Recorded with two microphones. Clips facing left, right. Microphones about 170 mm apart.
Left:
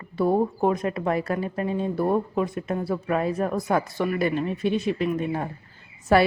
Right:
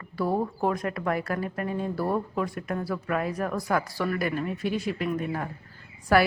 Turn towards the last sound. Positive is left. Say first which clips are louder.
# left 3 dB
turn(degrees=25)  # may be behind; listen again after turning